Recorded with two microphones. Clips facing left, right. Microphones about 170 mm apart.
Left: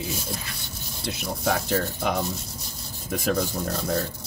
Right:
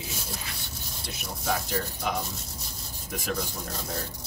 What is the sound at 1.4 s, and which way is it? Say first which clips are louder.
Speech: left 5 dB; 65° left (ahead or behind).